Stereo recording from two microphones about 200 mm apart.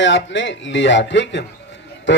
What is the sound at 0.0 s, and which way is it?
Speech, 65° left (ahead or behind).